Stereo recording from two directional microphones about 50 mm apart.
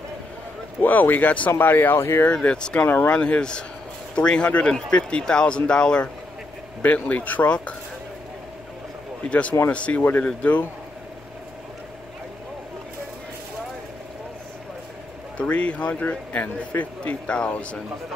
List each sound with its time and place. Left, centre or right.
0.7 s speech: left
2.0 s speech: left
2.4 s speech: left
2.8 s speech: left
3.1 s speech: left
6.8 s speech: left
9.3 s speech: left
15.3 s speech: left